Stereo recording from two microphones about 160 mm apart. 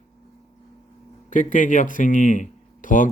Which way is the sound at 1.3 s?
55° left (ahead or behind).